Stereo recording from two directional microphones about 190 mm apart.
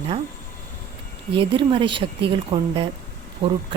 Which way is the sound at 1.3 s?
25° right (ahead or behind).